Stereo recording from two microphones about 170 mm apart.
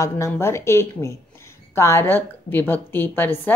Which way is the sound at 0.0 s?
15° left (ahead or behind).